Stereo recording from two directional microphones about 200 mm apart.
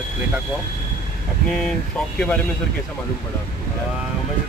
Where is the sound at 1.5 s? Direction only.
5° left (ahead or behind).